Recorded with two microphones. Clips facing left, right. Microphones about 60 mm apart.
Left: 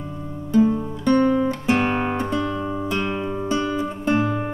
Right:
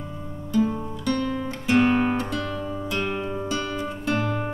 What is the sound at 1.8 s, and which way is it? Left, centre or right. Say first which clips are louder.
Music: right 1 dB; centre.